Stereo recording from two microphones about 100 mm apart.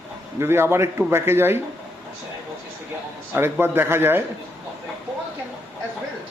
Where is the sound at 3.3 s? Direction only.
25° right (ahead or behind).